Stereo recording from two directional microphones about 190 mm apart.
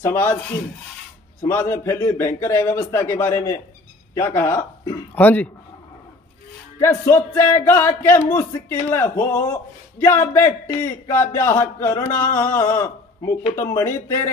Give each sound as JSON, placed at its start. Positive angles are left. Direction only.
{"t": 0.0, "sound": "speech", "side_deg": 10}
{"t": 1.4, "sound": "speech", "side_deg": 15}
{"t": 6.8, "sound": "speech", "side_deg": 15}